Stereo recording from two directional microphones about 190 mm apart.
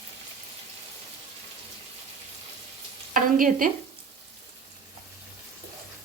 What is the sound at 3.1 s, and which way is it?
Frying, 45° right (ahead or behind).